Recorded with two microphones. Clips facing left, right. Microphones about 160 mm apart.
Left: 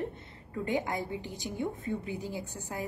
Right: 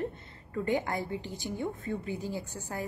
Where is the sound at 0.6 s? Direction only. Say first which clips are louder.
Right 1 dB; 20° left (ahead or behind).